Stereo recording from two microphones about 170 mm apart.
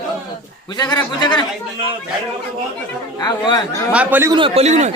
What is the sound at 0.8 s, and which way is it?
Speech, 25° left (ahead or behind).